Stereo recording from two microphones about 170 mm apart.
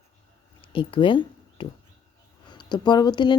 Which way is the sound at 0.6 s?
30° left (ahead or behind).